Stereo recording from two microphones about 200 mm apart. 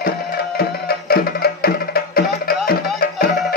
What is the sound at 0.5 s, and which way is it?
Music, 50° left (ahead or behind).